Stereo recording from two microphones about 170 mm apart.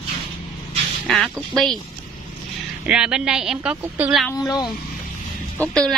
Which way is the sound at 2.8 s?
5° right (ahead or behind).